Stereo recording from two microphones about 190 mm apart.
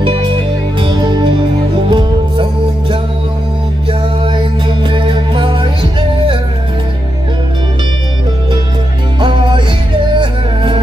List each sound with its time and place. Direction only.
0.7 s music: 20° right (ahead or behind)
4.8 s music: 25° right (ahead or behind)
10.2 s music: 25° right (ahead or behind)